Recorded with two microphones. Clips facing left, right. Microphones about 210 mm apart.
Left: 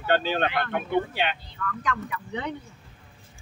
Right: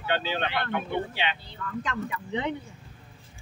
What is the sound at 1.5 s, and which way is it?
Speech, 25° right (ahead or behind).